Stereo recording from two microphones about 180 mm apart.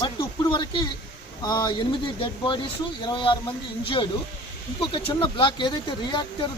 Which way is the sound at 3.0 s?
25° left (ahead or behind).